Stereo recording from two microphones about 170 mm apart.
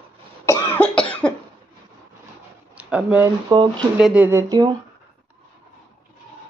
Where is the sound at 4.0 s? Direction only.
5° right (ahead or behind); by 4.7 s 25° right (ahead or behind).